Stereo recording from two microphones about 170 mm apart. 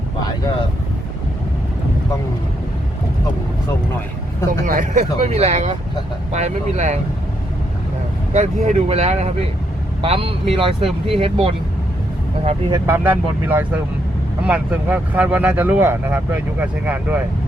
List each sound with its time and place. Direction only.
0.2 s vehicle: 25° left (ahead or behind)
4.6 s speech: 50° right (ahead or behind)
8.3 s speech: 45° right (ahead or behind)
12.7 s speech: 15° right (ahead or behind)